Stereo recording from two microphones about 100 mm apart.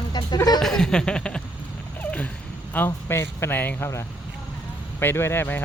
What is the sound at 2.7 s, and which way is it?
A man's voice, 25° left (ahead or behind).